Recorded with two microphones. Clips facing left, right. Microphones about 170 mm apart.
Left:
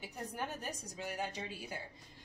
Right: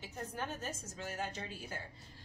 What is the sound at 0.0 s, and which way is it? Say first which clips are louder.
A woman's voice: even; 15° left (ahead or behind).